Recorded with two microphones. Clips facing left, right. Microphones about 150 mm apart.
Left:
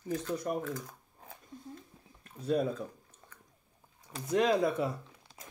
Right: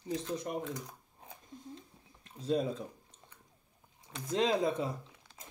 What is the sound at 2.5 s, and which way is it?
Speech, 25° right (ahead or behind).